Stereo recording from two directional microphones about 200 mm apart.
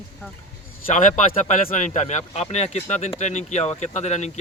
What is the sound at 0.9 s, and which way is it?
Speech, 40° left (ahead or behind).